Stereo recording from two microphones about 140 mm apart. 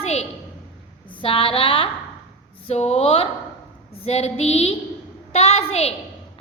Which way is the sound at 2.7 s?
45° left (ahead or behind).